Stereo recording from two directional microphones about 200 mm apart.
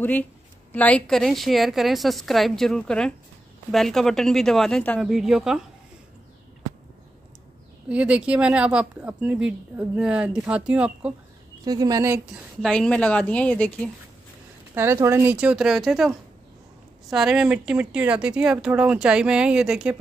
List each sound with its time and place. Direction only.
0.0 s speech: 10° left (ahead or behind)
7.9 s speech: 5° right (ahead or behind)
11.6 s speech: 20° right (ahead or behind)
12.6 s speech: 5° left (ahead or behind)
14.7 s speech: 15° right (ahead or behind)